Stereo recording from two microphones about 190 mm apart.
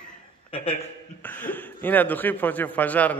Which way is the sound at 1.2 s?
10° left (ahead or behind).